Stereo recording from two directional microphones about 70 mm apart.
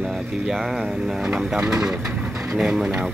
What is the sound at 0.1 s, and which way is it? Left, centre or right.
Speech, centre.